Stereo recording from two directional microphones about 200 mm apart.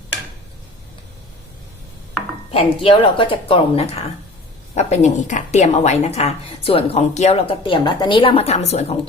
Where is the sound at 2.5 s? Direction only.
25° left (ahead or behind).